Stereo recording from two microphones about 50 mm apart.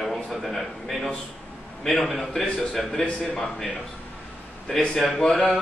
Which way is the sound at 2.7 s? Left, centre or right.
Centre.